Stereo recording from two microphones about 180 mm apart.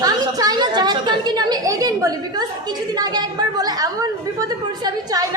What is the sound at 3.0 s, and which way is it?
A woman's voice, 20° right (ahead or behind).